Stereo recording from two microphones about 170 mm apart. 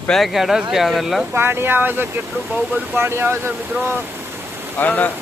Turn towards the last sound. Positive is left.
turn(degrees=10)  # may be behind; listen again after turning